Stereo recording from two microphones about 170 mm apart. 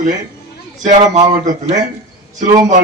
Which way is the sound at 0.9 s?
45° right (ahead or behind).